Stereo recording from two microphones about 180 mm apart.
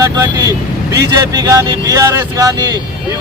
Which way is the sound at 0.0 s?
20° right (ahead or behind).